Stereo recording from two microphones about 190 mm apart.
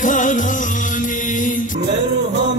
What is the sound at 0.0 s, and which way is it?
Music, 45° left (ahead or behind).